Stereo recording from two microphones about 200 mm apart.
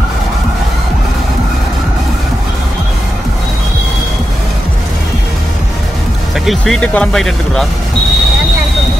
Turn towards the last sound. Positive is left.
turn(degrees=0)  # may be behind; listen again after turning